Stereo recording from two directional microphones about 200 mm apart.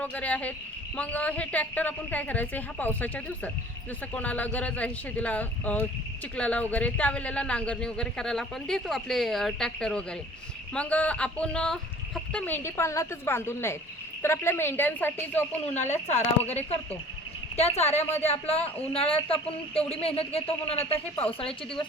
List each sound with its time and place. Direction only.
0.0 s speech: 5° left (ahead or behind)
15.9 s a woman's voice: 35° left (ahead or behind)